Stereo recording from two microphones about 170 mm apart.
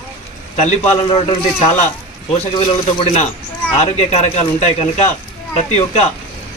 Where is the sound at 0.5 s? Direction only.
40° left (ahead or behind).